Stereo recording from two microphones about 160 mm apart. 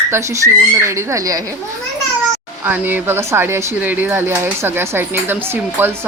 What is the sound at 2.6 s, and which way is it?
Speech, 10° right (ahead or behind).